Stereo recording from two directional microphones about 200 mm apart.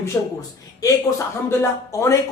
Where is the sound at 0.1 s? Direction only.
15° left (ahead or behind).